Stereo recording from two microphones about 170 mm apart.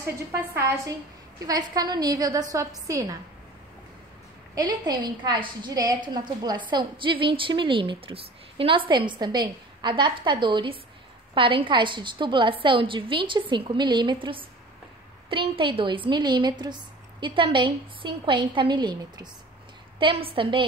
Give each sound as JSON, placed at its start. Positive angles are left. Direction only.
{"t": 0.0, "sound": "a woman's voice", "side_deg": -15}
{"t": 4.6, "sound": "a woman's voice", "side_deg": -25}
{"t": 15.5, "sound": "a woman's voice", "side_deg": -30}